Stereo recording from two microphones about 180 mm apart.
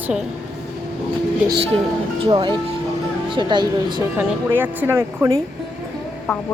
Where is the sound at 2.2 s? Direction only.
25° right (ahead or behind).